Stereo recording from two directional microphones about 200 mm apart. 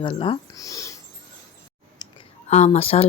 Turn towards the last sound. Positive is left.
turn(degrees=30)  # may be behind; listen again after turning